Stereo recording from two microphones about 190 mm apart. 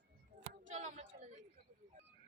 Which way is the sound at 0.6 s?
40° right (ahead or behind).